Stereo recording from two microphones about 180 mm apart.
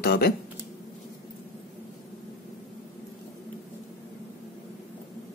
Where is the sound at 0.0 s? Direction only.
60° left (ahead or behind).